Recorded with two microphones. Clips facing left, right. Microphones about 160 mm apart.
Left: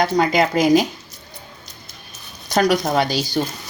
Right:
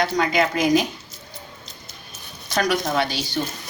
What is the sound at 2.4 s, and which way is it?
Speech, 40° left (ahead or behind).